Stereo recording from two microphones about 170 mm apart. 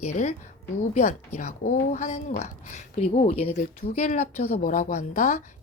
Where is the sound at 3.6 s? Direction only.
55° left (ahead or behind).